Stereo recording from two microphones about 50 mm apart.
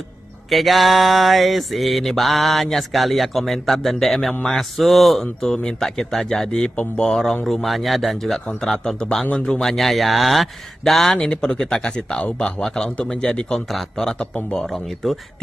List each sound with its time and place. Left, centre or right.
0.5 s mantra: centre
6.6 s speech: centre
7.4 s mantra: centre
11.1 s speech: centre
13.5 s mantra: centre